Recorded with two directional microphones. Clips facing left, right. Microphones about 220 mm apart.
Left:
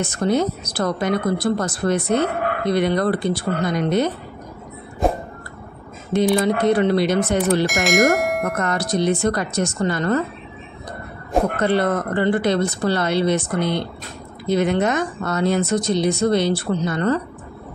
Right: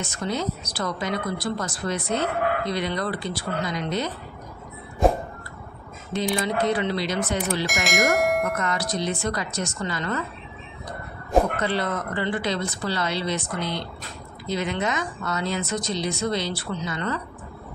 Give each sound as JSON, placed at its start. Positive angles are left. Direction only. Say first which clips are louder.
{"t": 0.0, "sound": "speech", "louder": "left 8 dB", "side_deg": 55}
{"t": 5.0, "sound": "music", "louder": "even", "side_deg": 0}
{"t": 6.1, "sound": "speech", "louder": "left 7 dB", "side_deg": 55}
{"t": 7.6, "sound": "bell", "louder": "left 7 dB", "side_deg": 0}
{"t": 8.5, "sound": "speech", "louder": "left 6 dB", "side_deg": 55}
{"t": 11.6, "sound": "speech", "louder": "left 7 dB", "side_deg": 55}